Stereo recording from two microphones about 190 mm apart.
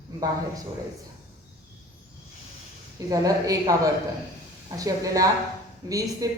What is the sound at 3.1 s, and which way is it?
Speech, 20° right (ahead or behind).